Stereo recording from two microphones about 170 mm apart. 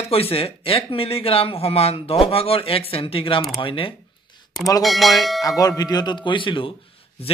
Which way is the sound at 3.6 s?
30° left (ahead or behind).